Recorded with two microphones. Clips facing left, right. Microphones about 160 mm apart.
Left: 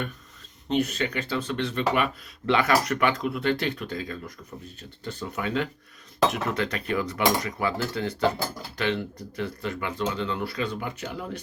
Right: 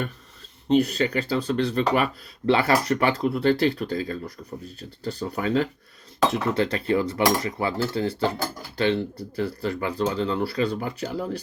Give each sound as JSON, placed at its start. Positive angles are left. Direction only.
{"t": 0.7, "sound": "speech", "side_deg": -35}
{"t": 6.3, "sound": "cutlery", "side_deg": -30}
{"t": 8.8, "sound": "speech", "side_deg": -30}